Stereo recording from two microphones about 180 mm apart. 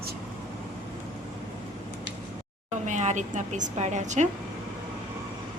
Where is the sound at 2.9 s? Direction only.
40° right (ahead or behind).